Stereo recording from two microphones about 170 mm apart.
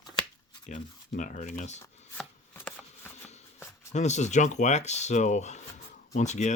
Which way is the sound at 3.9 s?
40° left (ahead or behind).